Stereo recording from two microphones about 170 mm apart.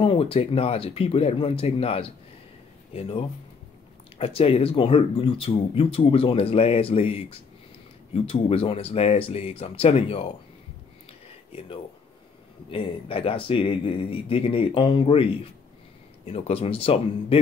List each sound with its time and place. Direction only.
0.0 s speech: 35° left (ahead or behind)
12.6 s speech: 30° left (ahead or behind)
16.3 s speech: 35° left (ahead or behind)